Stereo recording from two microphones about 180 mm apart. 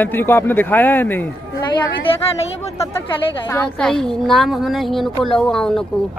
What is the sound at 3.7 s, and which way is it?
A woman's voice, 5° left (ahead or behind).